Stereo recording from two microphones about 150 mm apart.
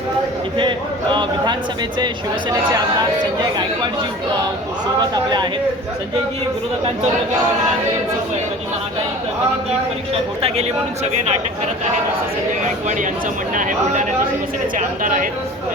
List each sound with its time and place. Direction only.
1.1 s speech: 30° right (ahead or behind)
4.9 s speech: 30° right (ahead or behind)
10.4 s speech: 45° right (ahead or behind)
12.6 s speech: 55° right (ahead or behind)